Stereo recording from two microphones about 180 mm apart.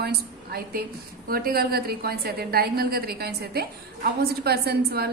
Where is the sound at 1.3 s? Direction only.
55° right (ahead or behind).